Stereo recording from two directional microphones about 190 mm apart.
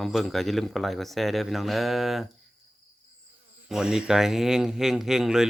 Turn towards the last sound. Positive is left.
turn(degrees=-5)  # may be behind; listen again after turning